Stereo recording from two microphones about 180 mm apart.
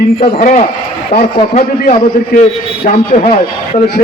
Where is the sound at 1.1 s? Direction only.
50° left (ahead or behind).